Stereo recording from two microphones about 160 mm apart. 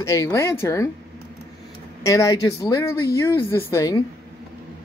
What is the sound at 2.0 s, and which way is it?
Speech, 20° left (ahead or behind).